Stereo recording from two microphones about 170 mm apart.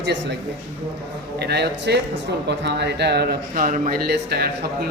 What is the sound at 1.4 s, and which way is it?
Speech, 75° right (ahead or behind).